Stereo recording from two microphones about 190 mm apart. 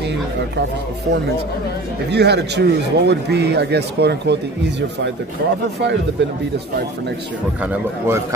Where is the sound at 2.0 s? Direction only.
60° right (ahead or behind).